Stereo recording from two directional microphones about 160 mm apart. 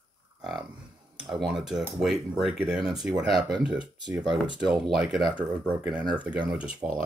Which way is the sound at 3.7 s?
25° right (ahead or behind).